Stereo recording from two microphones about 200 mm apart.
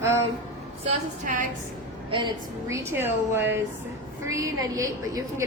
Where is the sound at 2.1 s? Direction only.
25° right (ahead or behind).